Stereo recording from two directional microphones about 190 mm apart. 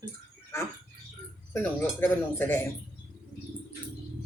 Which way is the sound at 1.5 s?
15° left (ahead or behind).